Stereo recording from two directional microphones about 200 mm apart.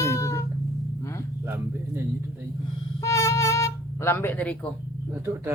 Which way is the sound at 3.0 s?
15° left (ahead or behind).